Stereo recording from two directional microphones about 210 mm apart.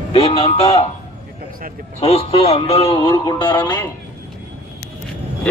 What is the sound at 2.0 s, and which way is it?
Speech, 30° left (ahead or behind).